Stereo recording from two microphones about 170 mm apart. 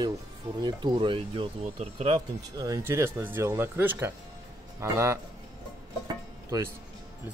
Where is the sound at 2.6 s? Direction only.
15° right (ahead or behind).